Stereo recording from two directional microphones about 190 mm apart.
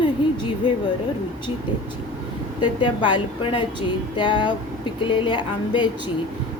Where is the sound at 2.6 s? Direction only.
25° left (ahead or behind).